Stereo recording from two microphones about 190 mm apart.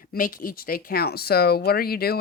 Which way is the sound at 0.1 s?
45° left (ahead or behind).